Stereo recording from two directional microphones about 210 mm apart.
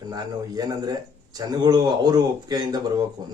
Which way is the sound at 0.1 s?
20° right (ahead or behind).